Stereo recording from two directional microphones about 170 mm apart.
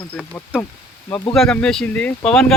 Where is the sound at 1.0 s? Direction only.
20° left (ahead or behind).